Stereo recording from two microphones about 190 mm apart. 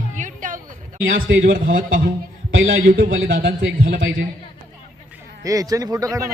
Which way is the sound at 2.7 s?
50° right (ahead or behind).